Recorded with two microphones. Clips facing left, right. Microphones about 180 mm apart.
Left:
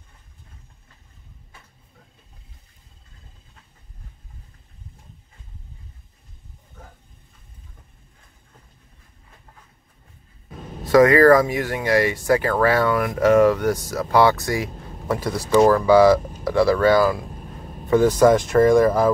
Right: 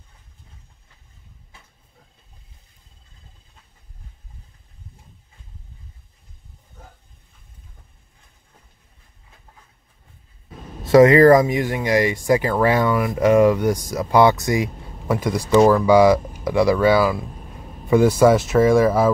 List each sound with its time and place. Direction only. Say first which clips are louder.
10.9 s speech: right 2 dB; 25° right (ahead or behind)
12.9 s speech: right 1 dB; centre (ahead or behind)
13.2 s speech: right 1 dB; 10° right (ahead or behind)